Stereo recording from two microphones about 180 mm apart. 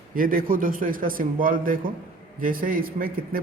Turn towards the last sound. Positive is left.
turn(degrees=-50)  # may be behind; listen again after turning